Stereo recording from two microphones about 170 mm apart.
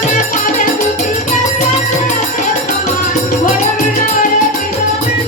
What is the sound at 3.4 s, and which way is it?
Music, 50° left (ahead or behind).